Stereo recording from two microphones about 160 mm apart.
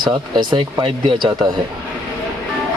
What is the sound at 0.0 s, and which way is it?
Speech, 30° right (ahead or behind).